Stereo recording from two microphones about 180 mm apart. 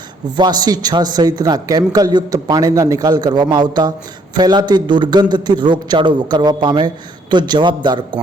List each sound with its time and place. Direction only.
0.3 s a man's voice: 25° right (ahead or behind)